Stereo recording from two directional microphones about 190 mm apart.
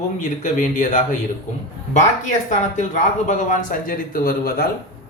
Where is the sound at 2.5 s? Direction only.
40° left (ahead or behind).